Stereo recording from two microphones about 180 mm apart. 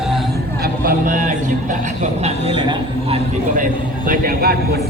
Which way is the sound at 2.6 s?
30° right (ahead or behind).